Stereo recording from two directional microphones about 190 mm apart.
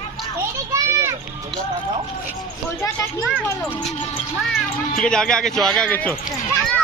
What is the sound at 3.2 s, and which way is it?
Speech, centre (ahead or behind).